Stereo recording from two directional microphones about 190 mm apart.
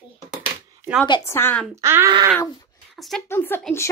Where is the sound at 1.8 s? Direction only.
15° right (ahead or behind).